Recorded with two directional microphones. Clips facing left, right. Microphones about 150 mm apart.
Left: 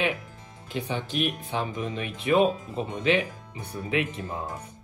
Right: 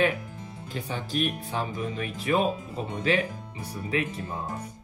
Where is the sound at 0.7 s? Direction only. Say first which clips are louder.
Left 3 dB; 40° right (ahead or behind).